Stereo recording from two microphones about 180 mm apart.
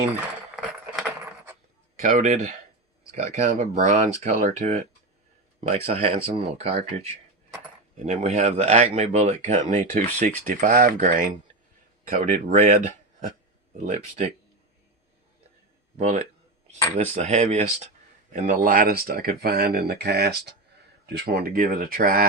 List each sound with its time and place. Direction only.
2.0 s speech: 40° right (ahead or behind)
16.0 s speech: 35° right (ahead or behind)
18.3 s speech: 45° right (ahead or behind)